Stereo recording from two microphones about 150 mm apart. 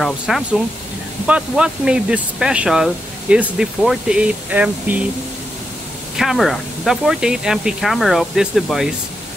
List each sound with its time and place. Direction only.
0.0 s speech: centre (ahead or behind)
6.1 s speech: centre (ahead or behind)